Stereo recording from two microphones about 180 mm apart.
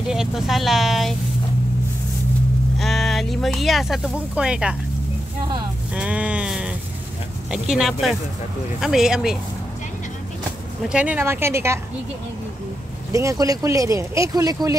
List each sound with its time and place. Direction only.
0.1 s speech: centre (ahead or behind)
2.8 s speech: centre (ahead or behind)
5.9 s sheep: 5° right (ahead or behind)
7.5 s speech: 5° right (ahead or behind)
10.8 s speech: 5° right (ahead or behind)
13.1 s speech: 15° right (ahead or behind)